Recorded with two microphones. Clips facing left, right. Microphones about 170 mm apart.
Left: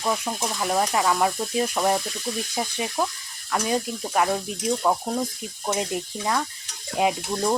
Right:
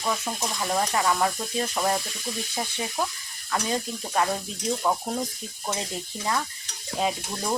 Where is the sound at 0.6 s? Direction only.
10° left (ahead or behind).